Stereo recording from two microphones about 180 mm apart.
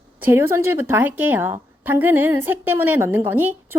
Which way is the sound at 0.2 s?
15° right (ahead or behind).